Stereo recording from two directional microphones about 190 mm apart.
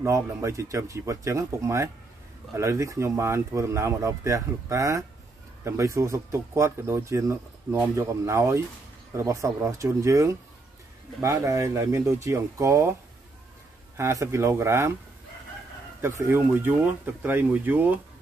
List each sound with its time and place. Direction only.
0.0 s speech: 15° right (ahead or behind)
13.9 s speech: 15° right (ahead or behind)
16.0 s speech: 10° right (ahead or behind)